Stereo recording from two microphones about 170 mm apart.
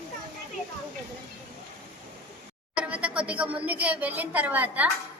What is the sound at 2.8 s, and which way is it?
A woman's voice, 5° right (ahead or behind).